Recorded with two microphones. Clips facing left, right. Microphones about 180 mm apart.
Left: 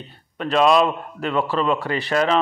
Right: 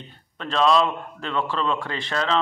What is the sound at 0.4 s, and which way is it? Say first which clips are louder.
A man's voice: left 3 dB; 15° left (ahead or behind).